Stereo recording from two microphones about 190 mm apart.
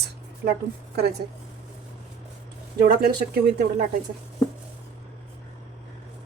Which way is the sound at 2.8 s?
50° right (ahead or behind).